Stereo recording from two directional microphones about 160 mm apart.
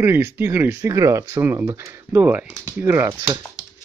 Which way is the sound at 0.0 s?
15° right (ahead or behind).